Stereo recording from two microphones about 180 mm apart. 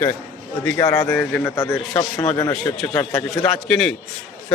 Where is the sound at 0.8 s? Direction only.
20° left (ahead or behind).